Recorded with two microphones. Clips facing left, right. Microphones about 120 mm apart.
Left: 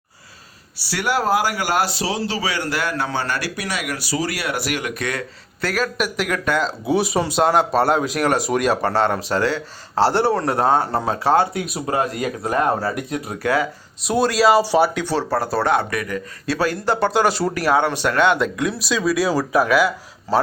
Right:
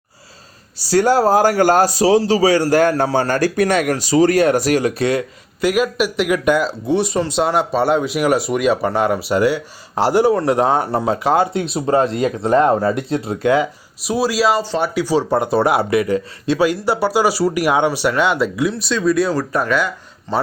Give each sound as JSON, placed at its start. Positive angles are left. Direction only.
{"t": 0.9, "sound": "a man's voice", "side_deg": -40}
{"t": 5.5, "sound": "speech", "side_deg": -10}
{"t": 6.4, "sound": "speech", "side_deg": -15}
{"t": 6.8, "sound": "speech", "side_deg": 5}
{"t": 14.0, "sound": "speech", "side_deg": 0}
{"t": 14.6, "sound": "speech", "side_deg": 10}
{"t": 14.9, "sound": "speech", "side_deg": -10}
{"t": 15.9, "sound": "speech", "side_deg": -25}
{"t": 16.6, "sound": "speech", "side_deg": -15}